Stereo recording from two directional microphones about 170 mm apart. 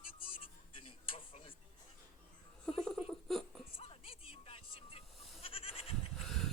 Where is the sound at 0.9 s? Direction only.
35° left (ahead or behind).